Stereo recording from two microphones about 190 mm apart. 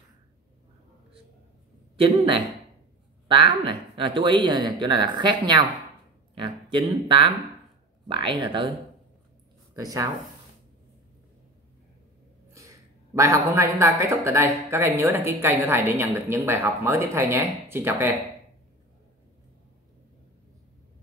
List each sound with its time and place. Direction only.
2.0 s speech: 25° right (ahead or behind)
6.3 s a sound: 25° right (ahead or behind)
6.9 s speech: 25° right (ahead or behind)
9.8 s speech: 20° right (ahead or behind)
12.5 s speech: 15° right (ahead or behind)